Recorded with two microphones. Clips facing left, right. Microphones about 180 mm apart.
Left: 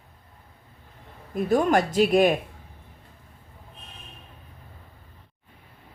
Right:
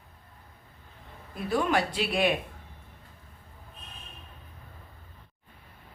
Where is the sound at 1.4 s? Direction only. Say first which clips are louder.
Left 6 dB; 45° left (ahead or behind).